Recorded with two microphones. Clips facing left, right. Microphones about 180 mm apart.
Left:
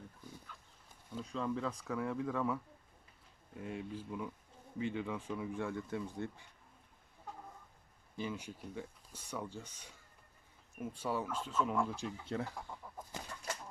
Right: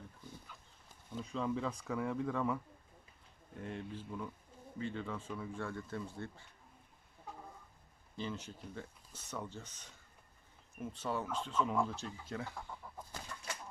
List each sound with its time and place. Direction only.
0.5 s dog: 10° right (ahead or behind)
1.1 s speech: centre (ahead or behind)
3.6 s speech: 5° left (ahead or behind)
8.1 s speech: 10° left (ahead or behind)
11.9 s speech: 15° left (ahead or behind)
12.3 s speech: 35° left (ahead or behind)